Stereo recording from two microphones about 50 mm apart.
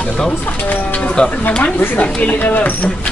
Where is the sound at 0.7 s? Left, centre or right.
Left.